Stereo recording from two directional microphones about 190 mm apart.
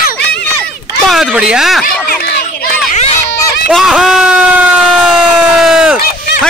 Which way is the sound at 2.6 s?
40° left (ahead or behind).